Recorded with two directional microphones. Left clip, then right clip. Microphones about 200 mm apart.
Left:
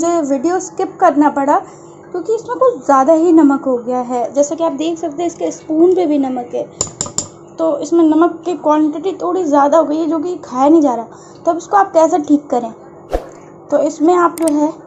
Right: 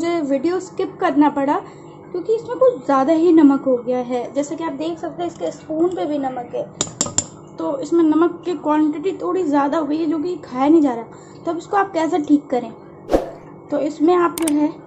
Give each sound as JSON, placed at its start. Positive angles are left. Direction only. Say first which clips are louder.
{"t": 0.0, "sound": "a woman's voice", "louder": "left 5 dB", "side_deg": 5}
{"t": 4.6, "sound": "a woman's voice", "louder": "left 8 dB", "side_deg": 15}